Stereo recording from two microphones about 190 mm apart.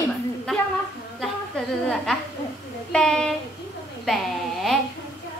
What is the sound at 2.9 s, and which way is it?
Speech, 5° left (ahead or behind).